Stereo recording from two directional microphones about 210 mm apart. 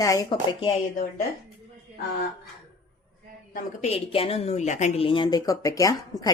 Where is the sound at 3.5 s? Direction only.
30° left (ahead or behind).